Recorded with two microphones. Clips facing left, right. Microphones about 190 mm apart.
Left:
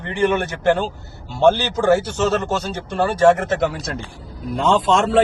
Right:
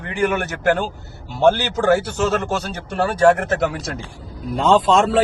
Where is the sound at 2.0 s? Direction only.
15° right (ahead or behind).